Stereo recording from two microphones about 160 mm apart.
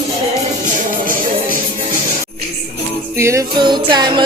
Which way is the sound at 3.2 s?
20° right (ahead or behind).